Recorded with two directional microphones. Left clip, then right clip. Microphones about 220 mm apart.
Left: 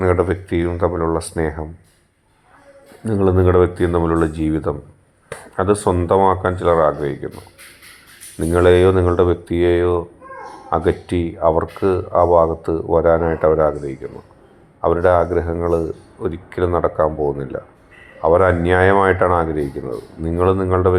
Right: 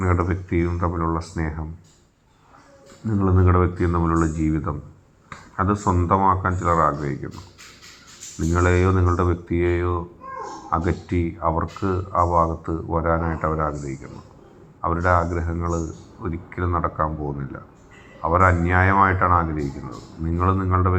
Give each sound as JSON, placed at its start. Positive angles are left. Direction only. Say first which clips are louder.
{"t": 0.0, "sound": "speech", "louder": "left 7 dB", "side_deg": 25}
{"t": 3.1, "sound": "speech", "louder": "left 7 dB", "side_deg": 25}
{"t": 8.4, "sound": "speech", "louder": "left 9 dB", "side_deg": 25}